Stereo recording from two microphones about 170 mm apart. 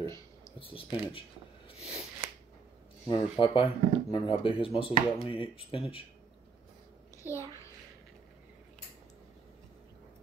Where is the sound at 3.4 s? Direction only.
30° left (ahead or behind).